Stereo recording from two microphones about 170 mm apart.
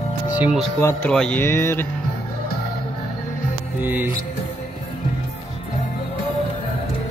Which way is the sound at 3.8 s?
10° right (ahead or behind).